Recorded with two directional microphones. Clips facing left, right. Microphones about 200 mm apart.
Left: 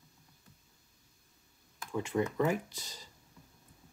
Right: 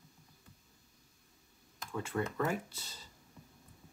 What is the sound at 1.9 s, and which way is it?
Speech, 15° left (ahead or behind).